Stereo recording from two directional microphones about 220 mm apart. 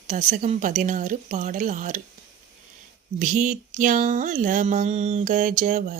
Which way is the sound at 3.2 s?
35° right (ahead or behind).